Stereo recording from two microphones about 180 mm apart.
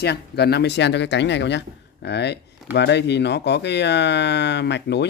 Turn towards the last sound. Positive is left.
turn(degrees=70)  # may be behind; listen again after turning